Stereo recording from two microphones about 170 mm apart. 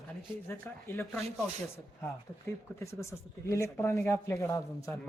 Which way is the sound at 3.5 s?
15° left (ahead or behind).